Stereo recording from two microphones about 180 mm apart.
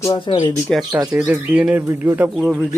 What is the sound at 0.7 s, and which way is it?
Speech, 5° left (ahead or behind).